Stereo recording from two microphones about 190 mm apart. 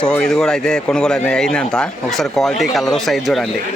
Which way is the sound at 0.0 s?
5° left (ahead or behind).